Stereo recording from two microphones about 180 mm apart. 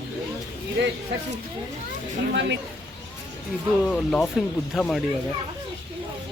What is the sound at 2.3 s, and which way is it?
Speech, 75° right (ahead or behind).